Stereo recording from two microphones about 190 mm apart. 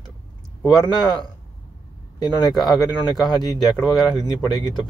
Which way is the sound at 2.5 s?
Centre (ahead or behind).